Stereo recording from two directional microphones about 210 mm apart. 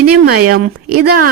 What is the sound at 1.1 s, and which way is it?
Speech, 45° right (ahead or behind).